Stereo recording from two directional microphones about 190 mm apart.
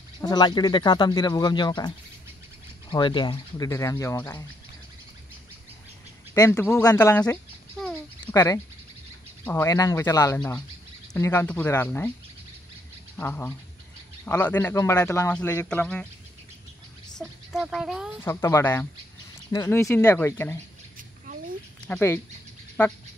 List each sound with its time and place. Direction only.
0.2 s a man's voice: 20° left (ahead or behind)
6.3 s a man's voice: 15° left (ahead or behind)
7.8 s a sound: 15° left (ahead or behind)
9.4 s a man's voice: 10° left (ahead or behind)
13.1 s a man's voice: 10° left (ahead or behind)
17.5 s speech: centre (ahead or behind)
18.2 s a man's voice: 15° left (ahead or behind)
21.8 s a man's voice: 10° left (ahead or behind)